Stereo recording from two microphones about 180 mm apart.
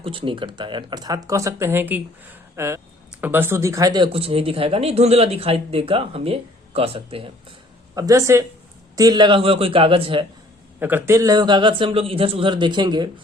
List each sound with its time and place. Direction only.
0.0 s speech: 30° right (ahead or behind)
7.9 s a man's voice: 20° right (ahead or behind)
10.8 s speech: 10° right (ahead or behind)